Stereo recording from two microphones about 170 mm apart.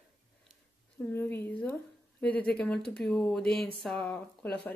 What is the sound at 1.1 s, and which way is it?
Speech, 10° left (ahead or behind).